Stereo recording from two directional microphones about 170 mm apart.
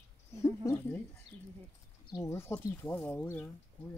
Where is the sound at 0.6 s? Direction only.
10° left (ahead or behind).